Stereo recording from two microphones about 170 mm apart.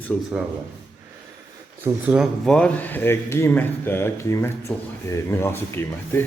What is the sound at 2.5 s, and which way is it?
Speech, 5° left (ahead or behind).